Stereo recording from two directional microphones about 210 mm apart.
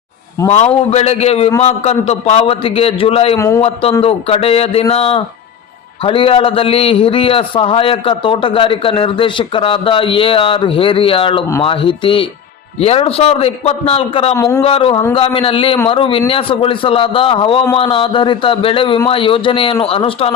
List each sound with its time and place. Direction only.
0.4 s a man's voice: 30° left (ahead or behind)
3.3 s a man's voice: 15° left (ahead or behind)
3.6 s a man's voice: 25° left (ahead or behind)
14.3 s a man's voice: 15° left (ahead or behind)
14.6 s a man's voice: 25° left (ahead or behind)